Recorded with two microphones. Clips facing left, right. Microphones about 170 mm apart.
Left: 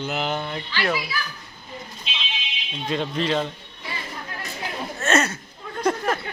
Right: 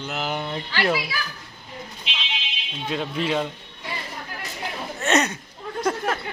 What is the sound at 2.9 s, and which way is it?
Speech, 5° right (ahead or behind).